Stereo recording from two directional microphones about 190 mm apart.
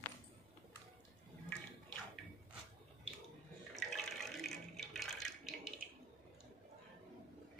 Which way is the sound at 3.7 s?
Centre (ahead or behind).